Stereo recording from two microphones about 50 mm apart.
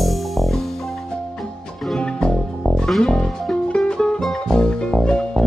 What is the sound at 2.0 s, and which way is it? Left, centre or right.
Music, centre.